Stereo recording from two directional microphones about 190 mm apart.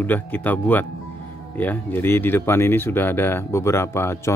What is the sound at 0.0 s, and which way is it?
Speech, 10° left (ahead or behind).